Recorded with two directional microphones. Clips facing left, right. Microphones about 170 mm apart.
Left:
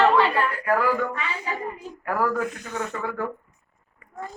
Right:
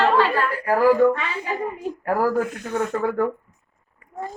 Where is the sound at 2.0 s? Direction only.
35° right (ahead or behind).